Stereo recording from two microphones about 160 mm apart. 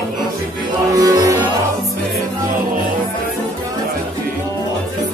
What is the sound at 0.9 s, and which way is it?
Music, 20° right (ahead or behind).